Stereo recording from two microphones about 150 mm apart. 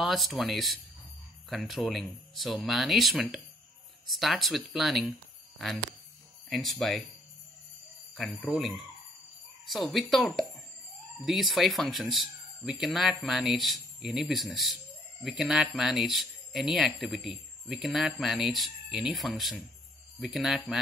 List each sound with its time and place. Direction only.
0.0 s speech: centre (ahead or behind)
6.5 s speech: centre (ahead or behind)
8.1 s speech: centre (ahead or behind)